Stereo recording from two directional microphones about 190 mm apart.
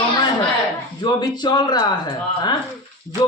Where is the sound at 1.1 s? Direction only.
20° left (ahead or behind).